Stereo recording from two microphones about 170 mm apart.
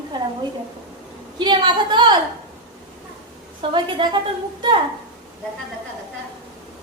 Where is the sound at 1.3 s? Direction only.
25° right (ahead or behind).